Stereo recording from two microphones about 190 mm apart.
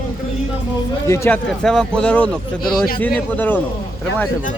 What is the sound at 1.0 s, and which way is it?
Speech, 15° left (ahead or behind).